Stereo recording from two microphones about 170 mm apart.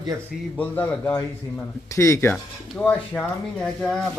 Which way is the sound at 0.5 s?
10° left (ahead or behind).